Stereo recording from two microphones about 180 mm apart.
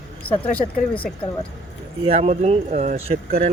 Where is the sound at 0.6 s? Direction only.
40° left (ahead or behind).